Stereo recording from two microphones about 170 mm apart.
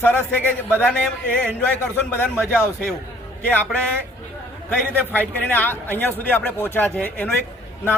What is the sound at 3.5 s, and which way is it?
A man's voice, 10° left (ahead or behind).